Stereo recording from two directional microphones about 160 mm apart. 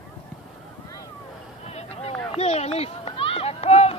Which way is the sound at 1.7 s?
40° left (ahead or behind).